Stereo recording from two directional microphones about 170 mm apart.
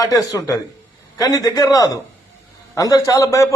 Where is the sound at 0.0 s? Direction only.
20° left (ahead or behind).